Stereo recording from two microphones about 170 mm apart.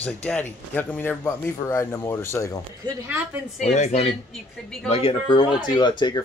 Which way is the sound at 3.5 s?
40° left (ahead or behind).